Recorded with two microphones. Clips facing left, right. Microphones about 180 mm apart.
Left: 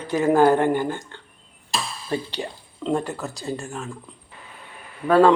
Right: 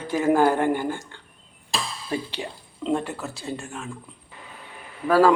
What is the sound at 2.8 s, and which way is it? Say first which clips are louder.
Speech: left 1 dB; 5° right (ahead or behind).